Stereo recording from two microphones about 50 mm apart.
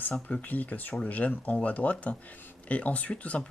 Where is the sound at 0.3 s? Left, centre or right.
Left.